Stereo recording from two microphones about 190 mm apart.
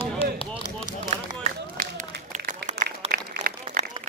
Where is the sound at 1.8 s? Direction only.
40° right (ahead or behind).